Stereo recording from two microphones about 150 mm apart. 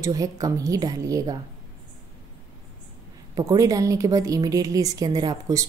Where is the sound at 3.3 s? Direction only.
25° right (ahead or behind).